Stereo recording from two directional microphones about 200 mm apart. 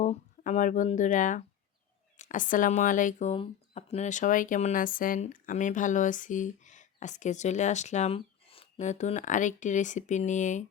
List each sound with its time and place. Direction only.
0.0 s speech: 35° left (ahead or behind)